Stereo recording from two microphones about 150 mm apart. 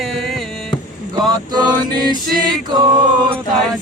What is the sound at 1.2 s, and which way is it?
Music, 30° right (ahead or behind).